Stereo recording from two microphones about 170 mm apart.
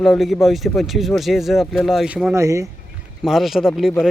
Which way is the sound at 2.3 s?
15° right (ahead or behind).